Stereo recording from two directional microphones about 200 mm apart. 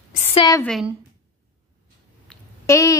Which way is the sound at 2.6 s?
15° left (ahead or behind).